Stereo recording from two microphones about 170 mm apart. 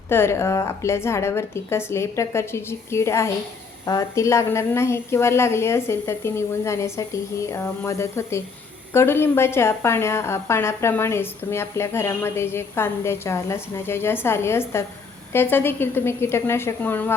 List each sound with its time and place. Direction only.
0.1 s a woman's voice: 15° left (ahead or behind)